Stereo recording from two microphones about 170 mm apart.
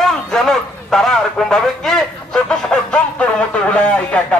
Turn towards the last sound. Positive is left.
turn(degrees=10)  # may be behind; listen again after turning